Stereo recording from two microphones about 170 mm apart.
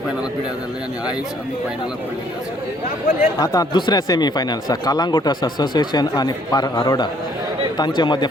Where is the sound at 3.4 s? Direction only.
20° left (ahead or behind).